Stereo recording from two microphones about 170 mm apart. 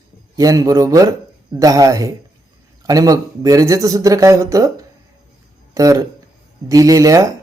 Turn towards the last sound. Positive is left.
turn(degrees=-20)  # may be behind; listen again after turning